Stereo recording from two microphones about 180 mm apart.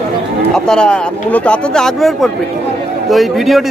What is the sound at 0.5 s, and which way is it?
A man's voice, 5° left (ahead or behind).